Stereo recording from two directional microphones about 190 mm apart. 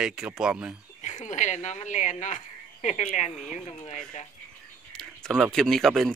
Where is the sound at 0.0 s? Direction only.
5° right (ahead or behind).